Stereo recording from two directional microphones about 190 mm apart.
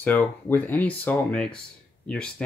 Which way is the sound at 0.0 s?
10° left (ahead or behind).